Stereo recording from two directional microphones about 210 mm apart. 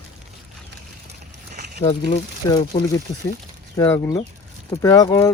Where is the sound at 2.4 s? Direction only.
20° left (ahead or behind).